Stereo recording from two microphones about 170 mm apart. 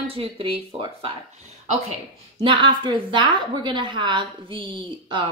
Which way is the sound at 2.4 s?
30° right (ahead or behind).